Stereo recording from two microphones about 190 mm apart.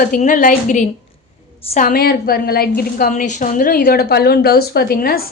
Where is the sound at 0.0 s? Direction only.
45° left (ahead or behind).